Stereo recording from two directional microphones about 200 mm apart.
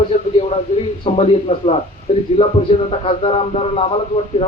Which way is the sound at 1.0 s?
30° left (ahead or behind).